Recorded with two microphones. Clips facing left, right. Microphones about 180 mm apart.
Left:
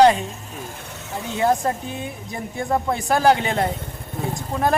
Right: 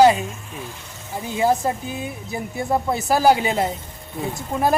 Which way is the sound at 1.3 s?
5° right (ahead or behind).